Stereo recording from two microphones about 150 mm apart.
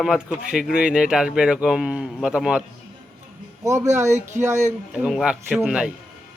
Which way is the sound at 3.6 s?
20° right (ahead or behind).